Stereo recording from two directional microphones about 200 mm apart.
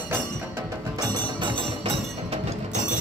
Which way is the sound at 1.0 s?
20° right (ahead or behind).